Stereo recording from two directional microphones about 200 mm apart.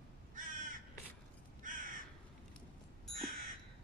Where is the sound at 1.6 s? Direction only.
40° right (ahead or behind).